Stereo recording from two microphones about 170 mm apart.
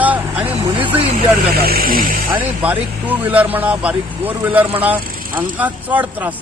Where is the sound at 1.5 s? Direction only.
60° right (ahead or behind).